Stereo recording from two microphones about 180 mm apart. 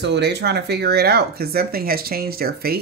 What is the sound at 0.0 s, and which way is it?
Speech, 70° right (ahead or behind).